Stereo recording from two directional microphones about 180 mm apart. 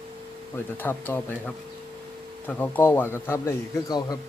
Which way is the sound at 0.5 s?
10° left (ahead or behind).